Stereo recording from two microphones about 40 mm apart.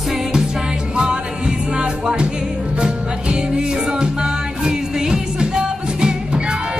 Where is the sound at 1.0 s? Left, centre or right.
Right.